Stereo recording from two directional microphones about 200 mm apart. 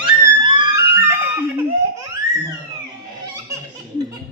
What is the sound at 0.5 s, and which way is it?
Music, 15° right (ahead or behind).